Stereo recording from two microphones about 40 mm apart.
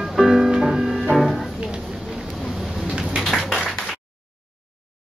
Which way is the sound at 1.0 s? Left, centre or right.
Centre.